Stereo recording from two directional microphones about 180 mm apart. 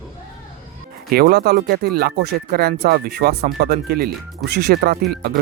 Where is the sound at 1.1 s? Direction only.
60° right (ahead or behind).